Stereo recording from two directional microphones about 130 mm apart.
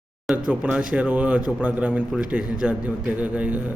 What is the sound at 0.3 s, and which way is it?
A man's voice, 10° right (ahead or behind).